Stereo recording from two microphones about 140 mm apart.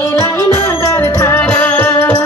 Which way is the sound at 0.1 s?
20° left (ahead or behind).